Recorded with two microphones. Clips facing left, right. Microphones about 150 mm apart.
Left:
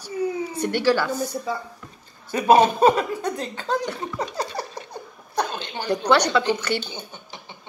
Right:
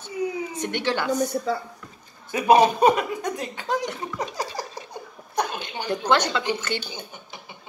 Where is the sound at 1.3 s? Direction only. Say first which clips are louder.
Right 2 dB; 60° right (ahead or behind).